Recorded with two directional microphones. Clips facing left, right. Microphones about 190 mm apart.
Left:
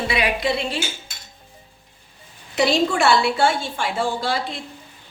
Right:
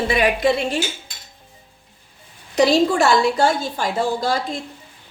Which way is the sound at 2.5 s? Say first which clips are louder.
Right 4 dB; 40° right (ahead or behind).